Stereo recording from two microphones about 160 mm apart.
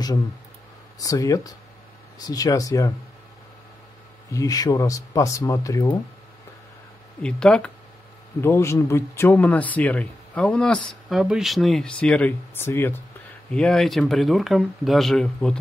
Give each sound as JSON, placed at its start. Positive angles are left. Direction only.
{"t": 0.9, "sound": "speech", "side_deg": 20}
{"t": 4.3, "sound": "speech", "side_deg": 20}
{"t": 7.2, "sound": "speech", "side_deg": 5}
{"t": 8.4, "sound": "speech", "side_deg": 15}